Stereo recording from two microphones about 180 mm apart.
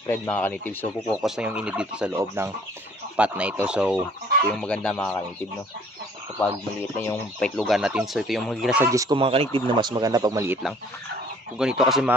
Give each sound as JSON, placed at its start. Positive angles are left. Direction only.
{"t": 0.0, "sound": "speech", "side_deg": 20}
{"t": 0.3, "sound": "speech", "side_deg": 10}
{"t": 1.1, "sound": "fowl", "side_deg": 0}
{"t": 4.5, "sound": "speech", "side_deg": 5}
{"t": 6.4, "sound": "speech", "side_deg": 15}
{"t": 7.3, "sound": "speech", "side_deg": 5}
{"t": 9.2, "sound": "speech", "side_deg": -30}
{"t": 11.5, "sound": "speech", "side_deg": -5}